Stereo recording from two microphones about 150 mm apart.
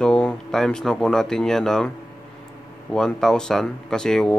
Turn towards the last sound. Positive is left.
turn(degrees=5)  # may be behind; listen again after turning